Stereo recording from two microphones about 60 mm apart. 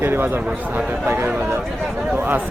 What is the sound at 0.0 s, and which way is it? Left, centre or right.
A man's voice, right.